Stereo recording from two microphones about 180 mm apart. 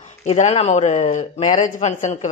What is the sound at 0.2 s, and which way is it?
Speech, 40° left (ahead or behind).